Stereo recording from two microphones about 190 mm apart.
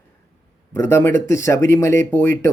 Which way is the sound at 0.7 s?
15° left (ahead or behind).